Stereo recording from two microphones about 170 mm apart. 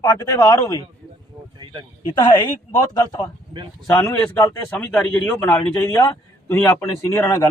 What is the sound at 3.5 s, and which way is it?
Speech, 25° right (ahead or behind).